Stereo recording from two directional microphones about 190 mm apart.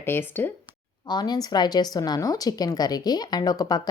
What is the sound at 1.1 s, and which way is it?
Speech, 20° left (ahead or behind).